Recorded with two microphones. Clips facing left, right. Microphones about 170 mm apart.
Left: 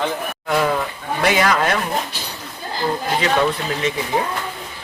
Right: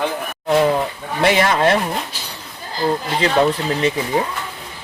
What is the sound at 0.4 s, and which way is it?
Speech, 30° right (ahead or behind).